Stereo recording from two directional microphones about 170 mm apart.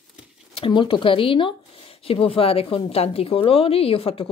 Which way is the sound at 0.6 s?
30° left (ahead or behind).